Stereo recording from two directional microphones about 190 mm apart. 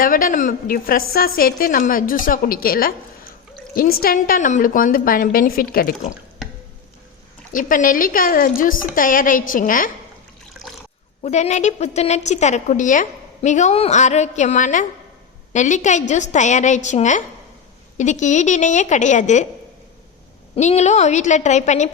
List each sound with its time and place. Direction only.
0.0 s a woman's voice: 45° left (ahead or behind)
4.0 s a woman's voice: 45° left (ahead or behind)
7.5 s a woman's voice: 45° left (ahead or behind)
11.2 s a woman's voice: 35° left (ahead or behind)
20.6 s a woman's voice: 35° left (ahead or behind)